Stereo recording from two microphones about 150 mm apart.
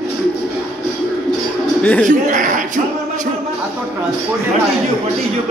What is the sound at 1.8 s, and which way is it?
Speech, 10° left (ahead or behind).